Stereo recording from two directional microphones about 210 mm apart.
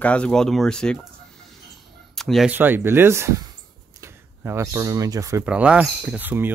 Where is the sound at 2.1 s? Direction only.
Centre (ahead or behind); by 5.4 s 15° right (ahead or behind).